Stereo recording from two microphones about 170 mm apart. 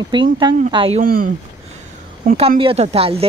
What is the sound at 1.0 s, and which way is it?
Speech, 55° right (ahead or behind).